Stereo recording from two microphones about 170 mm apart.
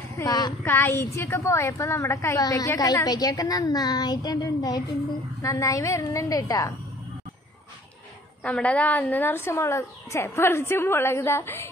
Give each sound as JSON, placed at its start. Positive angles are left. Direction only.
{"t": 0.1, "sound": "a woman's voice", "side_deg": 20}
{"t": 8.5, "sound": "speech", "side_deg": 5}